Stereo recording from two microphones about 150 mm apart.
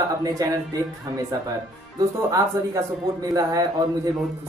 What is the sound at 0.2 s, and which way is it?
Speech, 25° right (ahead or behind).